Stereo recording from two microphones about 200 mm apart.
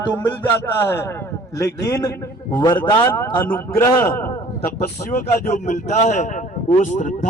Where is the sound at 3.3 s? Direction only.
10° left (ahead or behind).